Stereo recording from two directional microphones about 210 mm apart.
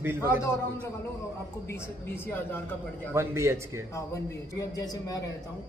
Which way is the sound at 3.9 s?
15° left (ahead or behind).